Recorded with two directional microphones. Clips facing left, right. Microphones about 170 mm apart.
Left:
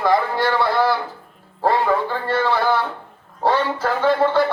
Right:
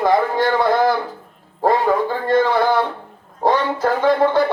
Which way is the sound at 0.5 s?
20° right (ahead or behind).